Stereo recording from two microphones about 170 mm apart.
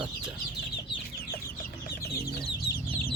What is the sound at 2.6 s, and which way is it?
Chicken, 60° left (ahead or behind).